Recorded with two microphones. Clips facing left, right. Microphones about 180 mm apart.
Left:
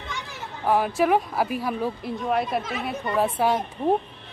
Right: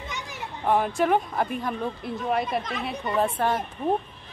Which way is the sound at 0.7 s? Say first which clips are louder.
Left 1 dB; 5° left (ahead or behind).